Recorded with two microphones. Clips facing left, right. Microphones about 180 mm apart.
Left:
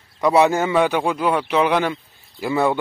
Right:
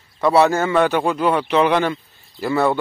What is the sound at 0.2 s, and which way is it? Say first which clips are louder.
Speech: right 1 dB; 15° left (ahead or behind).